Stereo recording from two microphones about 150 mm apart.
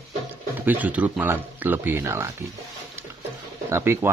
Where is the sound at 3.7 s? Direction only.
15° right (ahead or behind).